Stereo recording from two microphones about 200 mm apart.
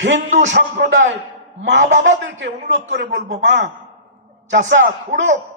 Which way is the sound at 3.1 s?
65° right (ahead or behind).